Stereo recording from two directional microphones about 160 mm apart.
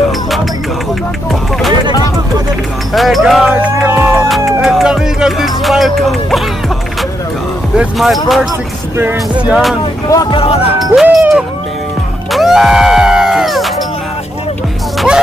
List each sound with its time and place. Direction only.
2.9 s speech: centre (ahead or behind)
3.5 s music: 10° right (ahead or behind)
4.5 s music: centre (ahead or behind)
7.7 s speech: 5° right (ahead or behind)
9.5 s speech: centre (ahead or behind)
10.3 s speech: 35° left (ahead or behind)
10.8 s speech: centre (ahead or behind)
12.3 s music: centre (ahead or behind)